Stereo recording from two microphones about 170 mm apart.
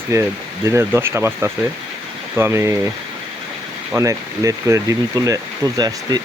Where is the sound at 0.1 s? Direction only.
15° right (ahead or behind).